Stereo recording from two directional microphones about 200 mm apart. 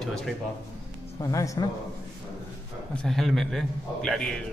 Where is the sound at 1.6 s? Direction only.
20° left (ahead or behind).